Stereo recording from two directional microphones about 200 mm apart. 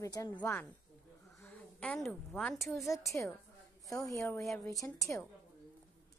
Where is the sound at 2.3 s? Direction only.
Centre (ahead or behind).